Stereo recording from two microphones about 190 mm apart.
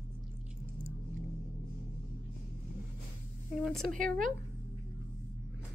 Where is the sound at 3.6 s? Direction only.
5° left (ahead or behind).